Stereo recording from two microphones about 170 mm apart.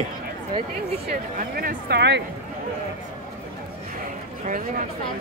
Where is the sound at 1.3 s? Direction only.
60° right (ahead or behind); by 2.2 s 80° right.